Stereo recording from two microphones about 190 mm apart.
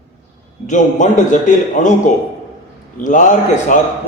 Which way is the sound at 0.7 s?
40° left (ahead or behind).